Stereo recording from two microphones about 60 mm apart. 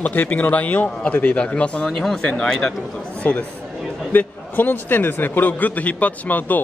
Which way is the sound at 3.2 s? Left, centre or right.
Left.